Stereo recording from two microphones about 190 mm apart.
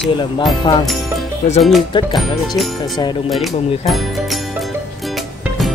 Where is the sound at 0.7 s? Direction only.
25° left (ahead or behind).